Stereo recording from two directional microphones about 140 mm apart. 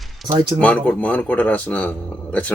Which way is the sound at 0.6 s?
10° left (ahead or behind).